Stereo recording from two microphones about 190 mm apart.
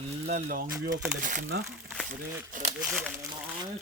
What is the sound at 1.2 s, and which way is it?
Speech, 40° right (ahead or behind).